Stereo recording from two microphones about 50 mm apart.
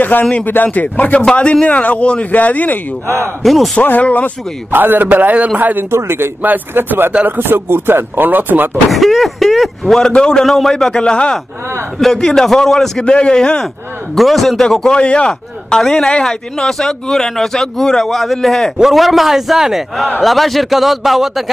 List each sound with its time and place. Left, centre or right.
0.0 s speech: left
1.3 s a man's voice: left
2.3 s speech: left
3.4 s speech: centre
4.0 s speech: left
4.6 s speech: right
5.9 s speech: right
6.4 s speech: right
8.9 s speech: centre
12.0 s speech: centre
13.0 s speech: centre
14.1 s speech: centre
15.0 s a man's voice: left; by 21.5 s centre